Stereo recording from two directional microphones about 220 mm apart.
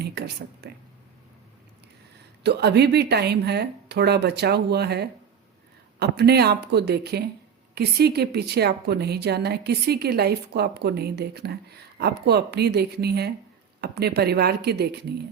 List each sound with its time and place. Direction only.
0.0 s a woman's voice: 45° right (ahead or behind)
2.4 s a woman's voice: 50° right (ahead or behind)